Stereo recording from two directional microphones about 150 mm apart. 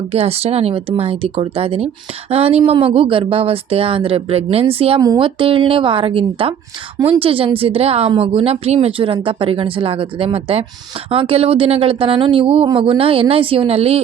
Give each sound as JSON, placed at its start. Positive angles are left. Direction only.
{"t": 0.1, "sound": "a woman's voice", "side_deg": -40}